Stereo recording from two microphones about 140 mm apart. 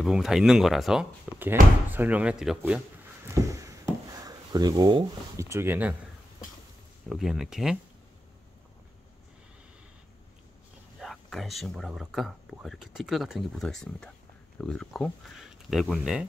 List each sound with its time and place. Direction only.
0.0 s speech: 5° right (ahead or behind)
1.4 s speech: 15° right (ahead or behind)
3.3 s a sound: 20° right (ahead or behind)
5.5 s speech: 15° right (ahead or behind)
7.1 s speech: centre (ahead or behind)
11.0 s speech: centre (ahead or behind)